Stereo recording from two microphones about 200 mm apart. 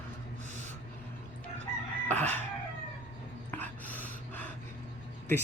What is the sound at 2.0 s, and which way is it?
Chicken, 10° left (ahead or behind).